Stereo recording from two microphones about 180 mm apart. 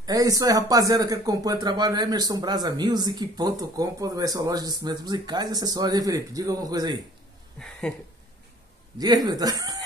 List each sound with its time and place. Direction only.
0.0 s speech: 20° right (ahead or behind)
7.5 s a sound: 5° left (ahead or behind)
8.9 s speech: 20° right (ahead or behind)